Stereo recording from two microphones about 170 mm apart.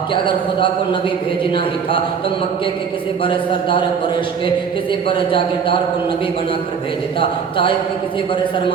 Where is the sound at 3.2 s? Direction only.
30° left (ahead or behind).